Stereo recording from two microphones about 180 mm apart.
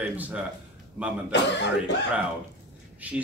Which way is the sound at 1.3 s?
75° left (ahead or behind).